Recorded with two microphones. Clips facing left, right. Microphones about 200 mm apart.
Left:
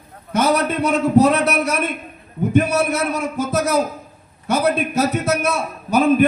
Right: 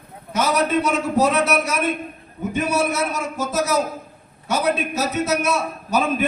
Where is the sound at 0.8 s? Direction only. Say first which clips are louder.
Left 5 dB; 60° left (ahead or behind).